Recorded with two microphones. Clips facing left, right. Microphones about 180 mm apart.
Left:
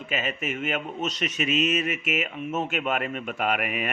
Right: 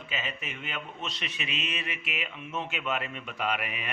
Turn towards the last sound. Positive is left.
turn(degrees=50)  # may be behind; listen again after turning